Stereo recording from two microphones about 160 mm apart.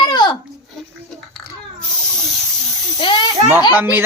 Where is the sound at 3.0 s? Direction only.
30° left (ahead or behind).